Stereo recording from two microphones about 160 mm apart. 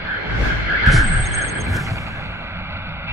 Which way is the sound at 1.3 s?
20° right (ahead or behind).